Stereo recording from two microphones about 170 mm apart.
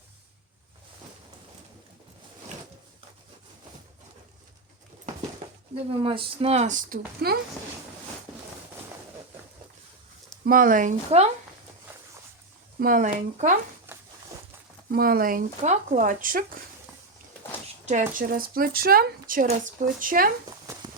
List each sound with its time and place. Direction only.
5.7 s speech: 30° right (ahead or behind); by 7.3 s 60° right (ahead or behind)
10.4 s speech: 55° right (ahead or behind)
12.8 s speech: 50° right (ahead or behind)
13.9 s a sound: 15° right (ahead or behind)
14.9 s speech: 60° right (ahead or behind)
17.8 s speech: 50° right (ahead or behind)